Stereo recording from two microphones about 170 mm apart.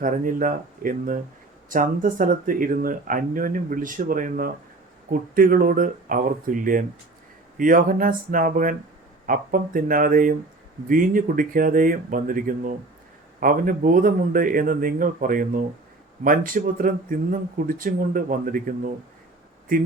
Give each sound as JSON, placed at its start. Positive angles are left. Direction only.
{"t": 0.0, "sound": "speech", "side_deg": -50}